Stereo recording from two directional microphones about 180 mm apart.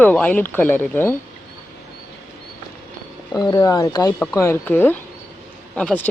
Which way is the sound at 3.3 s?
20° left (ahead or behind).